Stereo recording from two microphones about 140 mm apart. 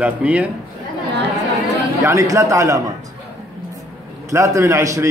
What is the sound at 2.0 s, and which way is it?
Speech, 20° right (ahead or behind).